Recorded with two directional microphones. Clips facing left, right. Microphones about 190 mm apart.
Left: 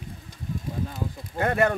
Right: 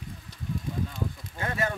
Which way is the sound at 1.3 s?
60° left (ahead or behind).